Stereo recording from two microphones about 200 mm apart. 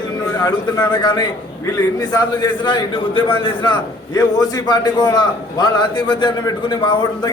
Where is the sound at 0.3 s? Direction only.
20° left (ahead or behind).